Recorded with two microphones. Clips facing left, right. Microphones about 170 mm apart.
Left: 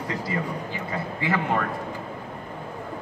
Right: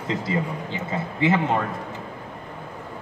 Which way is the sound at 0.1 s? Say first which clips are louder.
Right 4 dB; 20° right (ahead or behind).